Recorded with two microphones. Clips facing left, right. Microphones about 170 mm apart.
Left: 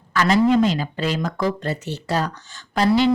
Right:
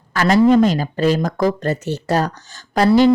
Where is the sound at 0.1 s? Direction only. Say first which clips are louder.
Right 4 dB; 45° right (ahead or behind).